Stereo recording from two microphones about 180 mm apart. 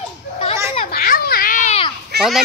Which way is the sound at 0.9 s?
55° left (ahead or behind).